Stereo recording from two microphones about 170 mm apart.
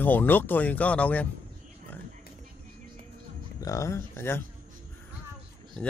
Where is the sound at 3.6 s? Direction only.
20° left (ahead or behind).